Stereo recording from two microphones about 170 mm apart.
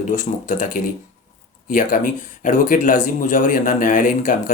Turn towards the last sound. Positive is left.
turn(degrees=50)  # may be behind; listen again after turning